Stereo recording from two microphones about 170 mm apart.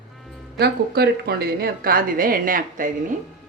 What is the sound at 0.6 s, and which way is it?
A woman's voice, 70° right (ahead or behind).